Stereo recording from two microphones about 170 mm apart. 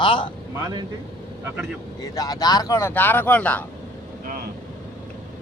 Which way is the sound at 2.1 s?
20° left (ahead or behind).